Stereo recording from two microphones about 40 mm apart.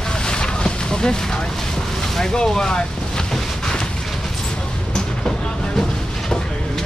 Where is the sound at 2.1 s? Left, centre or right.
Centre.